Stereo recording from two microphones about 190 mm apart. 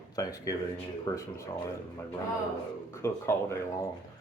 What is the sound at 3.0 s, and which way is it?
Speech, 15° left (ahead or behind).